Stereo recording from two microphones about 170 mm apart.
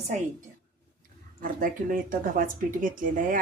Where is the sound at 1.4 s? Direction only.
55° right (ahead or behind).